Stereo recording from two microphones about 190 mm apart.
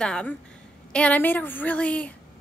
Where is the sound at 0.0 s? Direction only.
5° left (ahead or behind).